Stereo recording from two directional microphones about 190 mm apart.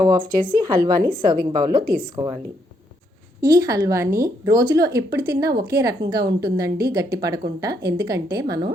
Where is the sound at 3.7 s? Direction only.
20° right (ahead or behind).